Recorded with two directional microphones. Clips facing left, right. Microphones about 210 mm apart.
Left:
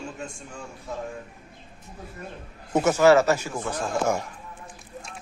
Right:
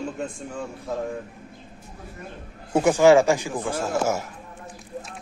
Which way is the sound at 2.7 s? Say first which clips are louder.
Right 2 dB; 15° right (ahead or behind).